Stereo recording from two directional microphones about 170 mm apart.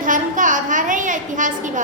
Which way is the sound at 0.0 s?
50° right (ahead or behind).